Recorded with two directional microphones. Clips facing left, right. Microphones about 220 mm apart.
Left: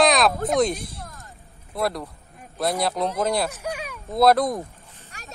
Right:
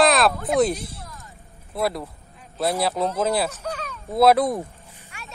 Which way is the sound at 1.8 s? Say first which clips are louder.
Right 1 dB; centre (ahead or behind).